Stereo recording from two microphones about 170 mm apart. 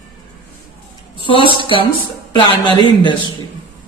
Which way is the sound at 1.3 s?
30° left (ahead or behind).